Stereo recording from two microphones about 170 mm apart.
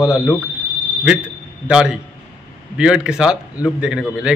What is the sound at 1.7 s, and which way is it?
A man's voice, 5° right (ahead or behind).